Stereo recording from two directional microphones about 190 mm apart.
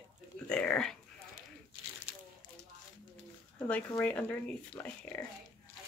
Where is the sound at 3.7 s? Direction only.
10° left (ahead or behind).